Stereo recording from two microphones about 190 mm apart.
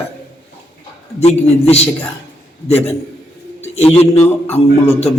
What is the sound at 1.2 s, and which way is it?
A man's voice, 35° left (ahead or behind).